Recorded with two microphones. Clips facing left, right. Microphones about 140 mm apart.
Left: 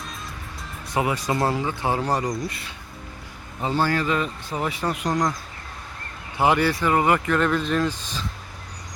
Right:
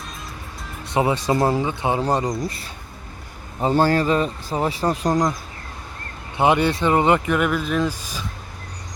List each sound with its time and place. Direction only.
0.9 s speech: 25° right (ahead or behind)
6.3 s speech: 20° right (ahead or behind)
7.3 s speech: 10° right (ahead or behind)